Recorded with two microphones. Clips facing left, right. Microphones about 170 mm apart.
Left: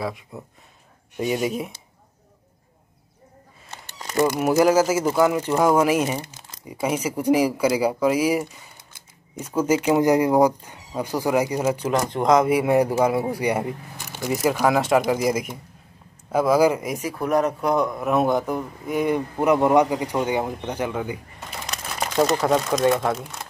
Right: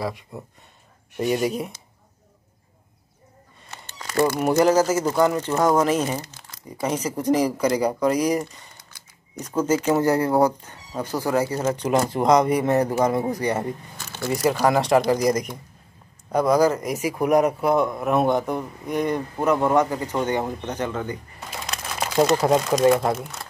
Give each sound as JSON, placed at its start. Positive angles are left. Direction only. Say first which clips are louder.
{"t": 0.0, "sound": "speech", "louder": "even", "side_deg": 0}
{"t": 3.7, "sound": "a sound", "louder": "even", "side_deg": 20}
{"t": 4.4, "sound": "a man's voice", "louder": "left 1 dB", "side_deg": 5}
{"t": 9.8, "sound": "a man's voice", "louder": "left 4 dB", "side_deg": 15}
{"t": 11.9, "sound": "a man's voice", "louder": "right 1 dB", "side_deg": -10}
{"t": 14.3, "sound": "speech", "louder": "even", "side_deg": 5}
{"t": 16.9, "sound": "a man's voice", "louder": "right 3 dB", "side_deg": -10}
{"t": 21.6, "sound": "crumpling", "louder": "even", "side_deg": 0}
{"t": 22.5, "sound": "speech", "louder": "right 2 dB", "side_deg": -5}